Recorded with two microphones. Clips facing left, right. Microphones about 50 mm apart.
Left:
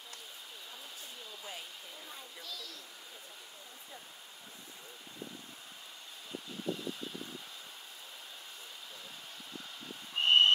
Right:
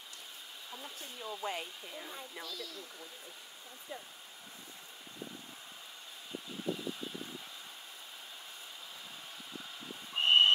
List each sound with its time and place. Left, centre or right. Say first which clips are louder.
1.4 s speech: right 9 dB; right
2.0 s speech: right 3 dB; centre
10.1 s vehicle: even; centre